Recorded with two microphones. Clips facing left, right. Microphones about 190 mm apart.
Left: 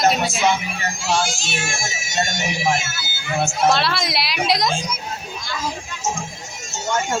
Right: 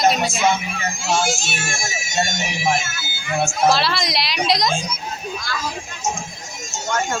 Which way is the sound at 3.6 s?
Centre (ahead or behind).